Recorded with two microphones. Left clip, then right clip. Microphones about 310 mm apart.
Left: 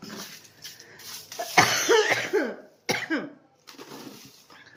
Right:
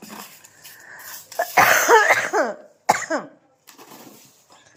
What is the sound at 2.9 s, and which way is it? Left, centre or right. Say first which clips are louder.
Cough: right 4 dB; centre.